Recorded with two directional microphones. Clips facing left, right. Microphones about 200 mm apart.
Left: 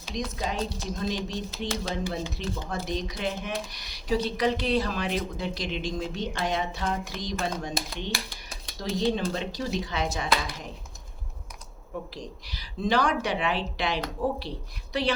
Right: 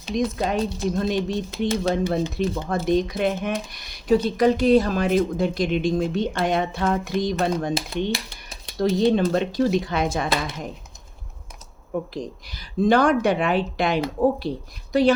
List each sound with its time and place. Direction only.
0.1 s speech: 55° right (ahead or behind)
12.1 s speech: 50° right (ahead or behind)